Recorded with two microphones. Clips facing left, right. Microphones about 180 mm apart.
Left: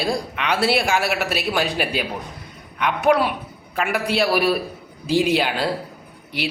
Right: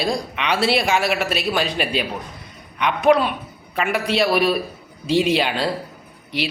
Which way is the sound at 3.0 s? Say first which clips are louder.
Right 2 dB; 10° left (ahead or behind).